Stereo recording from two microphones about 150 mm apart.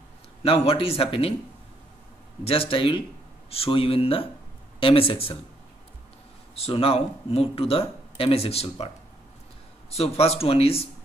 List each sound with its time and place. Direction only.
0.4 s speech: 40° left (ahead or behind)
2.4 s speech: 40° left (ahead or behind)
6.5 s speech: 40° left (ahead or behind)